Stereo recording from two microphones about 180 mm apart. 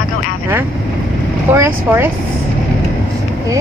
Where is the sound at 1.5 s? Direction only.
10° right (ahead or behind).